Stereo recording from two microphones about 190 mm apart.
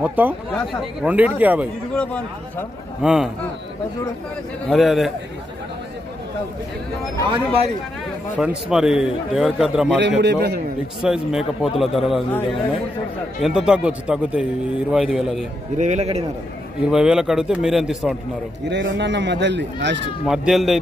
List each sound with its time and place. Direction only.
0.0 s speech: 10° right (ahead or behind)
3.0 s speech: centre (ahead or behind)
4.6 s speech: centre (ahead or behind)
7.2 s speech: 30° right (ahead or behind)
8.4 s speech: 5° right (ahead or behind)
9.9 s a man's voice: 65° right (ahead or behind)
11.1 s speech: 5° right (ahead or behind)
13.4 s speech: 5° right (ahead or behind)
15.8 s a man's voice: 35° right (ahead or behind)
16.9 s speech: 5° right (ahead or behind)
18.7 s speech: 70° right (ahead or behind)
20.2 s speech: centre (ahead or behind)